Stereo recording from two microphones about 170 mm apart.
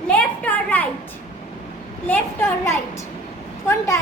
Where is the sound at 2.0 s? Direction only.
10° left (ahead or behind).